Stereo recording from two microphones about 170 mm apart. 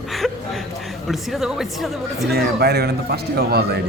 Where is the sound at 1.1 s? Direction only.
Centre (ahead or behind).